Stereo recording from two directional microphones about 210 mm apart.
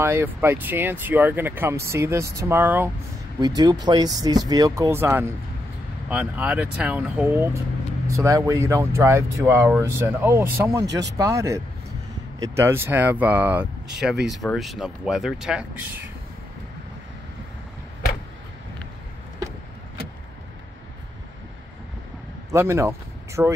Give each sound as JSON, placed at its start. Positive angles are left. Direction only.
{"t": 0.0, "sound": "speech", "side_deg": -10}
{"t": 22.5, "sound": "speech", "side_deg": -15}